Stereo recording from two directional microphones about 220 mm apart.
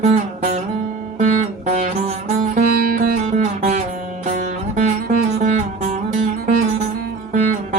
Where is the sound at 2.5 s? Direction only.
40° right (ahead or behind).